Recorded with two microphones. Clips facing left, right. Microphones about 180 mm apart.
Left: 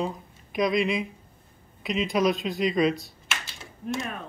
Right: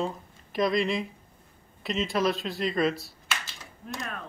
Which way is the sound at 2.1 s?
15° left (ahead or behind).